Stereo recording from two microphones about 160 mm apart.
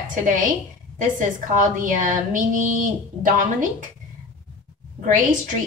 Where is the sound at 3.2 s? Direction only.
55° right (ahead or behind).